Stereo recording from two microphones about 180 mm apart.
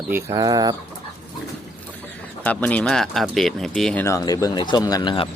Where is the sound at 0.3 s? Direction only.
20° right (ahead or behind).